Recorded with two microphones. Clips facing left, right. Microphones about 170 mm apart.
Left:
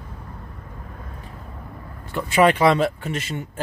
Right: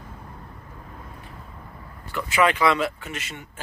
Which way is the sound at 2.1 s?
35° left (ahead or behind).